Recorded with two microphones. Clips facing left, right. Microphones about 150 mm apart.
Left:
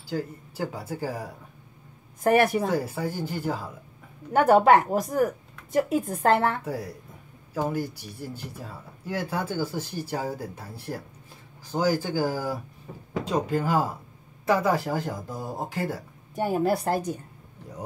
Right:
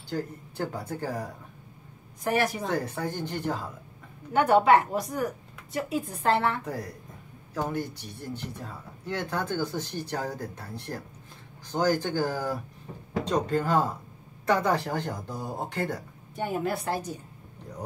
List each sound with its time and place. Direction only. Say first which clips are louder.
0.1 s speech: left 2 dB; 5° left (ahead or behind)
2.2 s a woman's voice: left 6 dB; 55° left (ahead or behind)
2.7 s speech: left 2 dB; 5° left (ahead or behind)
4.3 s a woman's voice: left 2 dB; 40° left (ahead or behind)
6.6 s speech: left 2 dB; 5° left (ahead or behind)
16.3 s a woman's voice: left 5 dB; 40° left (ahead or behind)